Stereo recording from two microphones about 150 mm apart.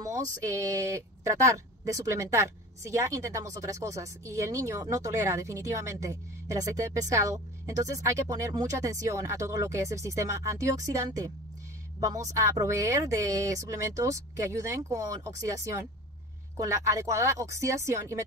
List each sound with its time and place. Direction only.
0.4 s speech: 20° right (ahead or behind)